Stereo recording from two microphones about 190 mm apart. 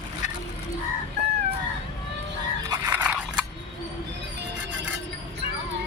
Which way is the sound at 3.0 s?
5° right (ahead or behind).